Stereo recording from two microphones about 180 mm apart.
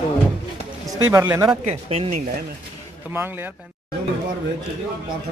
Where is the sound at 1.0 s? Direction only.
15° right (ahead or behind).